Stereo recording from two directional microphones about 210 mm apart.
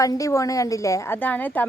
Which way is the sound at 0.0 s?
15° left (ahead or behind).